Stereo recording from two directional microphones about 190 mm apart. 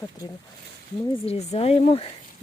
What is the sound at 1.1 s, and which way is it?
Speech, 30° left (ahead or behind).